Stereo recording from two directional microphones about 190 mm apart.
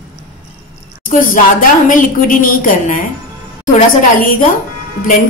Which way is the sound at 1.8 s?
45° left (ahead or behind).